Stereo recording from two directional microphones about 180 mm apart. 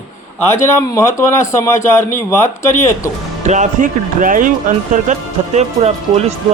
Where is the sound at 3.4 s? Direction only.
40° right (ahead or behind).